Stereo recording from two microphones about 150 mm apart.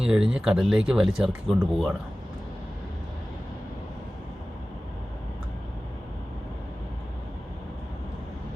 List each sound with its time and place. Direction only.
0.1 s speech: 5° right (ahead or behind)